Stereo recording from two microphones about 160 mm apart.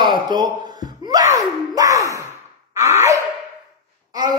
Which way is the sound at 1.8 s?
20° right (ahead or behind).